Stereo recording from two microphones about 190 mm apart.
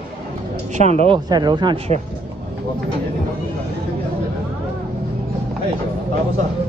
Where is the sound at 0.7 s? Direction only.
35° right (ahead or behind).